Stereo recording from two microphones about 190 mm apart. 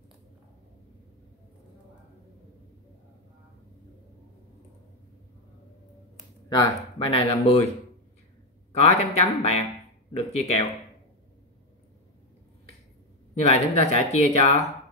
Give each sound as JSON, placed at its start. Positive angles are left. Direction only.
{"t": 6.5, "sound": "speech", "side_deg": 25}
{"t": 8.7, "sound": "speech", "side_deg": 35}
{"t": 13.3, "sound": "speech", "side_deg": 35}